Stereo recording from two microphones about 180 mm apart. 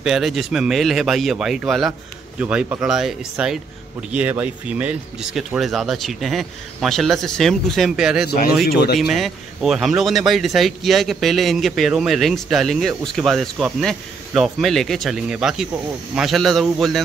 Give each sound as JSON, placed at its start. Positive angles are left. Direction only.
{"t": 0.0, "sound": "a man's voice", "side_deg": 0}
{"t": 8.6, "sound": "speech", "side_deg": 60}
{"t": 9.0, "sound": "a man's voice", "side_deg": 0}